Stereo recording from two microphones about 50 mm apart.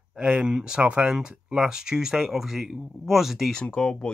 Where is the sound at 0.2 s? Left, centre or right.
Centre.